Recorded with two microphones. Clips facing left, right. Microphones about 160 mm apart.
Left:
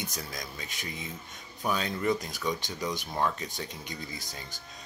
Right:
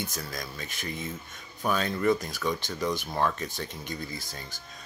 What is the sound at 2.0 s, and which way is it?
Speech, 15° left (ahead or behind).